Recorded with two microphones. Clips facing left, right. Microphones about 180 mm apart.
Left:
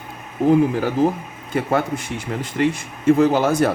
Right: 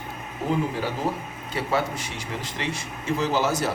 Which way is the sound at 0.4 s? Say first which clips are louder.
Left 10 dB; 55° left (ahead or behind).